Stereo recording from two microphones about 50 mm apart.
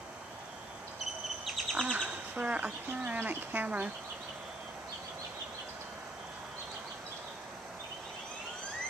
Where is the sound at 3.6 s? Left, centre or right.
Right.